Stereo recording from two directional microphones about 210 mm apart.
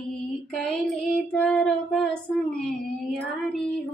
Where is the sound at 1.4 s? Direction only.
5° left (ahead or behind).